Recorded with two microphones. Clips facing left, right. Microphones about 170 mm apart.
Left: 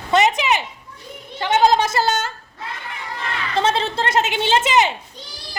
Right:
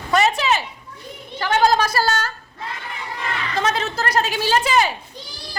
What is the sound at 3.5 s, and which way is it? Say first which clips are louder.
Speech: left 3 dB; 30° left (ahead or behind).